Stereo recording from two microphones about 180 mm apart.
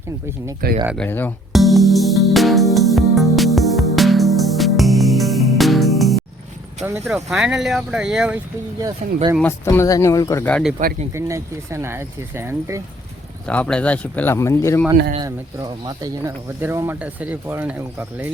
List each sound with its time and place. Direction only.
0.6 s speech: 55° right (ahead or behind)
0.9 s speech: 10° left (ahead or behind)
1.5 s music: centre (ahead or behind)
7.1 s speech: centre (ahead or behind)
9.0 s speech: 40° right (ahead or behind)
9.4 s speech: 15° left (ahead or behind)
10.5 s speech: 5° right (ahead or behind)
11.1 s speech: 15° right (ahead or behind)
13.5 s speech: 5° left (ahead or behind)
15.2 s speech: 20° right (ahead or behind)